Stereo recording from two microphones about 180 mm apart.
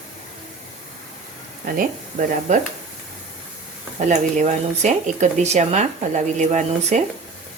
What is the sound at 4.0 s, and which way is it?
Speech, 45° right (ahead or behind).